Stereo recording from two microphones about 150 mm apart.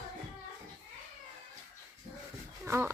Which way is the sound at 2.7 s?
15° right (ahead or behind).